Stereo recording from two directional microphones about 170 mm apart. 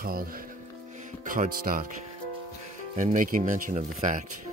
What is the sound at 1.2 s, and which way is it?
Speech, 55° right (ahead or behind).